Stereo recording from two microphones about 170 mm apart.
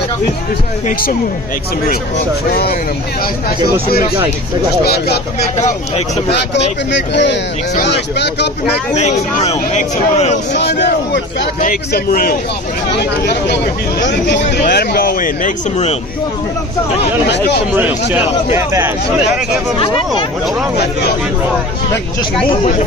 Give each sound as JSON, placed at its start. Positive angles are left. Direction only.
{"t": 4.8, "sound": "speech", "side_deg": 70}
{"t": 6.9, "sound": "speech", "side_deg": 90}
{"t": 8.9, "sound": "speech", "side_deg": 40}
{"t": 10.6, "sound": "speech", "side_deg": 80}
{"t": 11.6, "sound": "speech", "side_deg": 55}
{"t": 12.9, "sound": "speech", "side_deg": 80}
{"t": 14.7, "sound": "speech", "side_deg": 70}
{"t": 17.7, "sound": "speech", "side_deg": -10}